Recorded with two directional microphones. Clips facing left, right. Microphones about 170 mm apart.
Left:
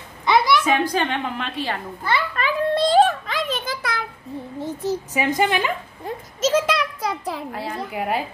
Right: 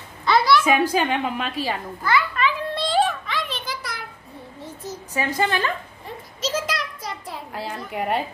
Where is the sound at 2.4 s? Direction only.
45° left (ahead or behind).